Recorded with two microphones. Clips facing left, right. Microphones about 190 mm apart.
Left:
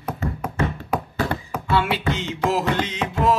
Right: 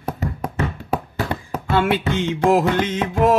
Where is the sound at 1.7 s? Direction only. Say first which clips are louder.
Right 3 dB; 50° right (ahead or behind).